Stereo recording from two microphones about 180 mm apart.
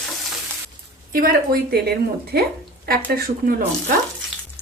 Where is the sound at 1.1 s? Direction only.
60° right (ahead or behind).